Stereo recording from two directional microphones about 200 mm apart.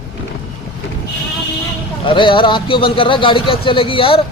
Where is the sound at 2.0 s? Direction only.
25° left (ahead or behind).